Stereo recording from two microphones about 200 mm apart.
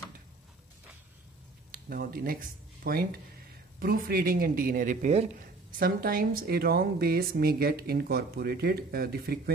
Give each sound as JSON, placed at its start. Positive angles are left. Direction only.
{"t": 1.7, "sound": "a woman's voice", "side_deg": -50}
{"t": 5.8, "sound": "a woman's voice", "side_deg": -50}